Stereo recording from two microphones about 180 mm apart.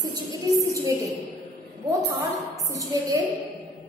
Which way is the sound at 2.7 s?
20° right (ahead or behind).